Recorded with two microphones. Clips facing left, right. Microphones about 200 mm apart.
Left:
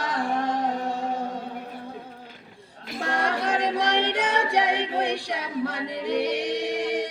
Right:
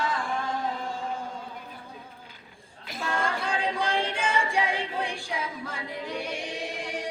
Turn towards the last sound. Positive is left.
turn(degrees=65)  # may be behind; listen again after turning